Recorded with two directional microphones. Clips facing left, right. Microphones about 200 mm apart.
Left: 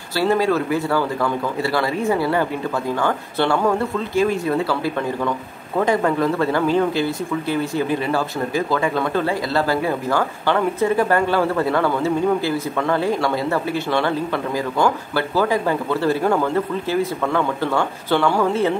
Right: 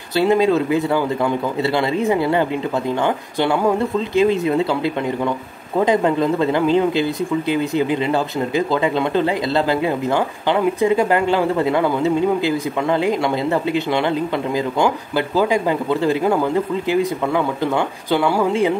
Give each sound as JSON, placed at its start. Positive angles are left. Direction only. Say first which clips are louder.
{"t": 0.1, "sound": "a man's voice", "louder": "right 3 dB", "side_deg": -20}